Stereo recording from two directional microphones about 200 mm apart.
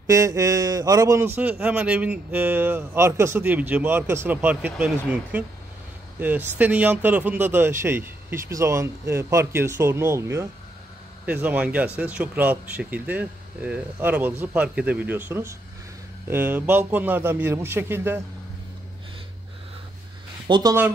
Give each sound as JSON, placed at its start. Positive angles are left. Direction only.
{"t": 0.0, "sound": "a man's voice", "side_deg": -15}
{"t": 20.4, "sound": "speech", "side_deg": -20}